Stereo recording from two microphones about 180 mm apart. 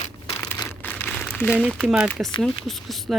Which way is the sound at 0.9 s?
10° left (ahead or behind).